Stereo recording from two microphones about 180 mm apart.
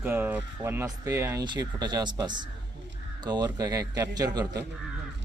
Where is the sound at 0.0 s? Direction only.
10° right (ahead or behind).